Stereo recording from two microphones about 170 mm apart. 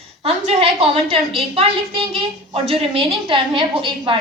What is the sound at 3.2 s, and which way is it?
Speech, 30° right (ahead or behind).